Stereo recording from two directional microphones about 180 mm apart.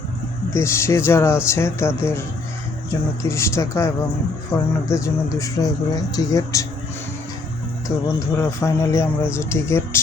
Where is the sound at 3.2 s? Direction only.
15° left (ahead or behind).